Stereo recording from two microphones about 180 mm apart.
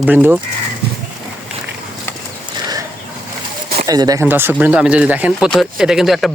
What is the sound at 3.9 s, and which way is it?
Speech, 20° right (ahead or behind).